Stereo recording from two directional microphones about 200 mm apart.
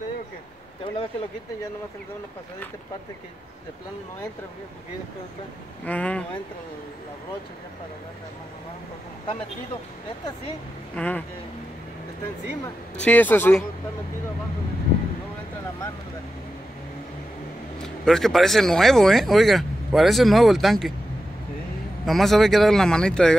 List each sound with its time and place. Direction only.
0.9 s speech: 25° left (ahead or behind)
5.9 s a man's voice: 5° left (ahead or behind)
11.0 s a man's voice: 5° left (ahead or behind)
13.0 s a man's voice: 10° left (ahead or behind)
17.8 s speech: centre (ahead or behind)
22.0 s speech: centre (ahead or behind)